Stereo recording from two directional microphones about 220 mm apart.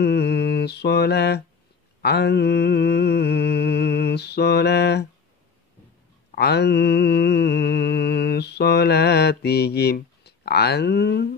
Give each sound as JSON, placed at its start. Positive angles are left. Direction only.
{"t": 0.0, "sound": "mantra", "side_deg": 50}
{"t": 6.3, "sound": "mantra", "side_deg": 50}